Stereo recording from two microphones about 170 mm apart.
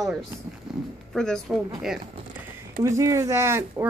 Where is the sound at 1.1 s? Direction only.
5° left (ahead or behind).